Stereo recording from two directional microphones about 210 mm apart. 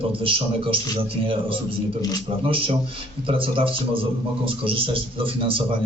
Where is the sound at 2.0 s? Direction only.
20° left (ahead or behind).